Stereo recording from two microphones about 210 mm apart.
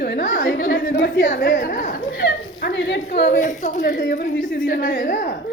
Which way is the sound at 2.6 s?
55° left (ahead or behind).